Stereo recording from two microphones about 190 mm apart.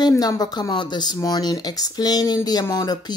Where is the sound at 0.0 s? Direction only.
15° left (ahead or behind).